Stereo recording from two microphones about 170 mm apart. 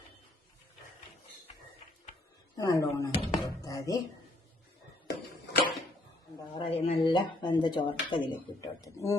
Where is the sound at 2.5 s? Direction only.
20° left (ahead or behind).